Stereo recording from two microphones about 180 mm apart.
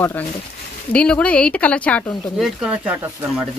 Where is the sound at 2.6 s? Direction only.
5° right (ahead or behind).